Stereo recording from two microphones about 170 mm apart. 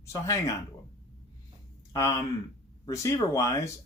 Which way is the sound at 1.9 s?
20° left (ahead or behind).